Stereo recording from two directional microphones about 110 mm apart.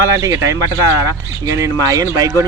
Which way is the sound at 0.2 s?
30° right (ahead or behind).